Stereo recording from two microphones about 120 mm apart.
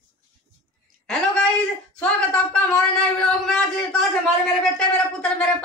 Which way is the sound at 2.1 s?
5° left (ahead or behind).